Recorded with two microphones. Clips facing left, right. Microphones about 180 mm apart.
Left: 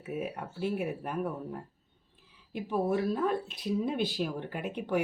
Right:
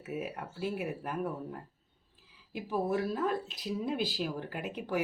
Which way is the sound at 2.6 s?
5° right (ahead or behind).